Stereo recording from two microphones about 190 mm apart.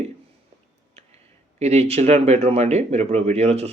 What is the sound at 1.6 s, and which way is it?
Speech, 35° right (ahead or behind).